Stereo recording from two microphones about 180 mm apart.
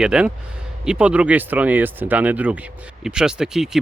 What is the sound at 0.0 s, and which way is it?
Speech, 5° right (ahead or behind).